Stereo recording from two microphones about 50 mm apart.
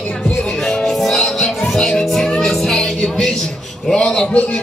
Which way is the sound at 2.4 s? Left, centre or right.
Centre.